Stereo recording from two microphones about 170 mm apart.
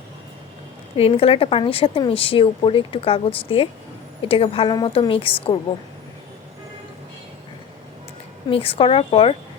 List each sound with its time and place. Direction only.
0.9 s a woman's voice: 35° left (ahead or behind)
8.4 s a woman's voice: 35° left (ahead or behind)